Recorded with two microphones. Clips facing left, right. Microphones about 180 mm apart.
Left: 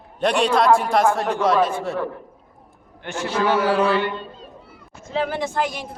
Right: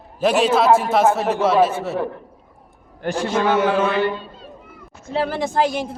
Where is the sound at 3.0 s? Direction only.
35° right (ahead or behind).